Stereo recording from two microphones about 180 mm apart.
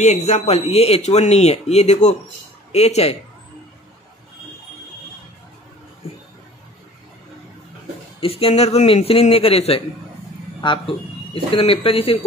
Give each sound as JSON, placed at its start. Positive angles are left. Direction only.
{"t": 0.0, "sound": "speech", "side_deg": 40}
{"t": 8.2, "sound": "speech", "side_deg": 30}